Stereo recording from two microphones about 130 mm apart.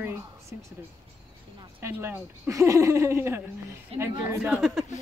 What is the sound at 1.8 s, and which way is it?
Speech, 20° right (ahead or behind).